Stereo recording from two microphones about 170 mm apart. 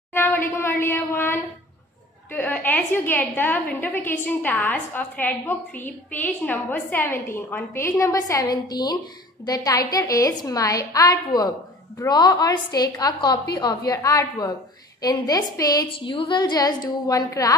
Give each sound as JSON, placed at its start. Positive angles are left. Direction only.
{"t": 0.1, "sound": "a woman's voice", "side_deg": 10}